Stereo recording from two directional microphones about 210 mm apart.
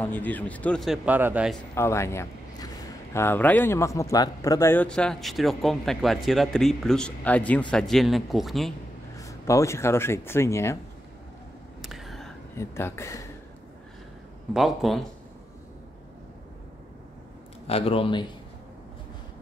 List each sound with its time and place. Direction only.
0.0 s a man's voice: 10° left (ahead or behind)
1.8 s a man's voice: 15° left (ahead or behind)
9.1 s speech: 15° left (ahead or behind)
11.8 s a sound: centre (ahead or behind)
12.5 s speech: 10° left (ahead or behind)
14.5 s a man's voice: centre (ahead or behind)
17.6 s a man's voice: 25° left (ahead or behind)